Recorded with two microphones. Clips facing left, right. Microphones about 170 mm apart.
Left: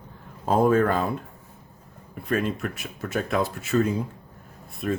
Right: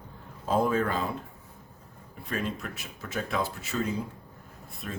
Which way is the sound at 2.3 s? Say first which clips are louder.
Left 7 dB; 55° left (ahead or behind).